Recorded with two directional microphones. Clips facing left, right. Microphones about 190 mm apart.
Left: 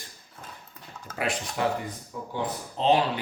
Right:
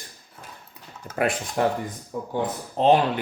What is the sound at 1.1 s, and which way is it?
Speech, 50° right (ahead or behind).